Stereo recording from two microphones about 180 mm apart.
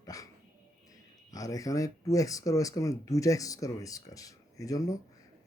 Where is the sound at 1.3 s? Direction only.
20° left (ahead or behind).